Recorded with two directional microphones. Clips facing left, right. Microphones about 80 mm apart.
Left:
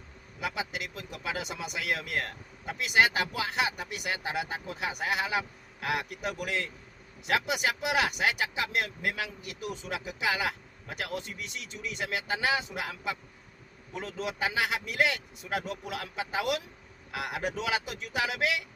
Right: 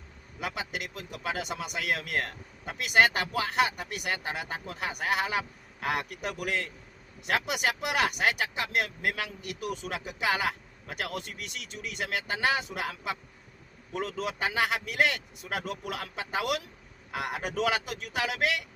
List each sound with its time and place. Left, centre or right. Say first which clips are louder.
0.3 s speech: left 1 dB; right